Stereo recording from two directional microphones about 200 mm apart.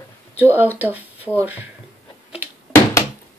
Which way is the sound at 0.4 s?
10° right (ahead or behind).